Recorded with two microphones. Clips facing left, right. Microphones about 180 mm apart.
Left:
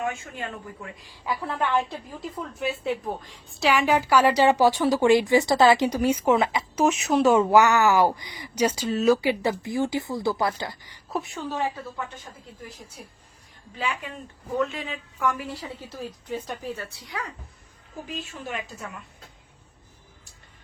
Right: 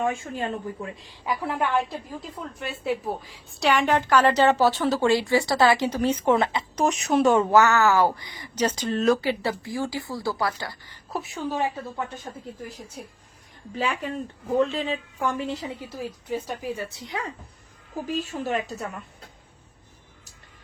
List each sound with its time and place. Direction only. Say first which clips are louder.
0.0 s speech: right 4 dB; 30° right (ahead or behind)
1.2 s a woman's voice: right 1 dB; 15° right (ahead or behind); by 11.0 s 15° left (ahead or behind)
11.3 s a woman's voice: right 2 dB; 10° right (ahead or behind)
12.3 s speech: right 7 dB; 45° right (ahead or behind)
13.7 s speech: right 4 dB; 40° right (ahead or behind)
15.9 s a woman's voice: right 2 dB; 10° right (ahead or behind)
18.0 s speech: right 7 dB; 40° right (ahead or behind)